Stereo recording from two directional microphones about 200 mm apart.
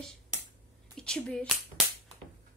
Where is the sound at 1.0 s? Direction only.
5° left (ahead or behind).